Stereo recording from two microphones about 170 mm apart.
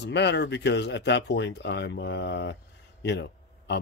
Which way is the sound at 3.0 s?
80° left.